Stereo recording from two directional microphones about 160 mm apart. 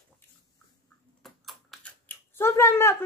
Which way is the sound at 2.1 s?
15° left (ahead or behind).